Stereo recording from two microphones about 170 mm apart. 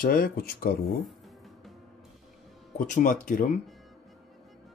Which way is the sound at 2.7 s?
50° left (ahead or behind).